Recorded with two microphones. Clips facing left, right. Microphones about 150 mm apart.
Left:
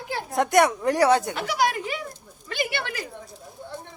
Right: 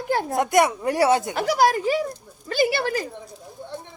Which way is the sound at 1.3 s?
40° right (ahead or behind).